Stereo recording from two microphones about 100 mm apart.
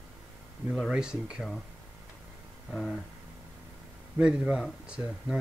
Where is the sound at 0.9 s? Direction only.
10° right (ahead or behind).